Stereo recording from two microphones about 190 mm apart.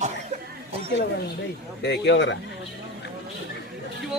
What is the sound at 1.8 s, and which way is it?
Speech, 65° left (ahead or behind).